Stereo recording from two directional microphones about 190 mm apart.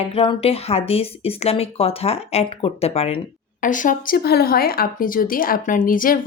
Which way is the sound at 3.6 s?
45° left (ahead or behind).